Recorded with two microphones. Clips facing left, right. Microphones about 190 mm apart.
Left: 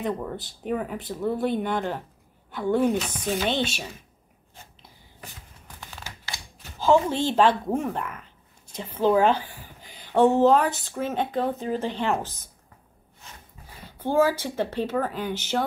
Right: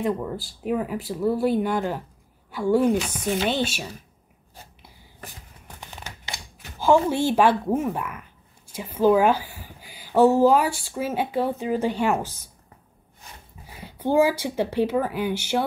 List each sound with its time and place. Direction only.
0.0 s speech: centre (ahead or behind)
5.8 s crumpling: 15° right (ahead or behind)
6.8 s speech: 10° right (ahead or behind)
13.7 s speech: 10° right (ahead or behind)